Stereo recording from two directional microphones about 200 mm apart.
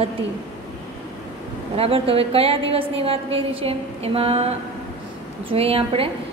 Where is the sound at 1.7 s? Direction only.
30° right (ahead or behind).